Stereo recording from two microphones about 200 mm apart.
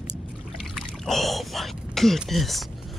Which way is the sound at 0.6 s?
Centre (ahead or behind).